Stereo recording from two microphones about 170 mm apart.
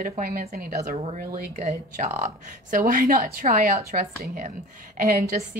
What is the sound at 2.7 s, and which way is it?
A woman's voice, 55° right (ahead or behind).